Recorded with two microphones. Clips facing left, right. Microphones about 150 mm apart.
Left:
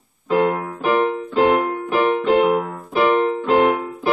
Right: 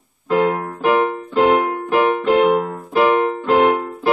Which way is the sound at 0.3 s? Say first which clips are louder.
Right 1 dB; centre (ahead or behind).